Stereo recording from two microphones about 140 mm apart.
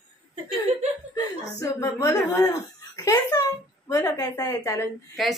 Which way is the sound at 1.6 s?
25° left (ahead or behind).